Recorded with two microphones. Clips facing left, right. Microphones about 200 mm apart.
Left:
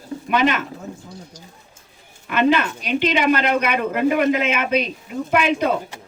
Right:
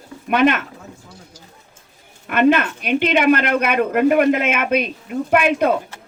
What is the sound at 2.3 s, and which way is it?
Speech, 50° right (ahead or behind).